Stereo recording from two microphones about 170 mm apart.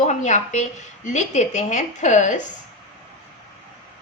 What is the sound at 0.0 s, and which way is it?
A woman's voice, 45° left (ahead or behind).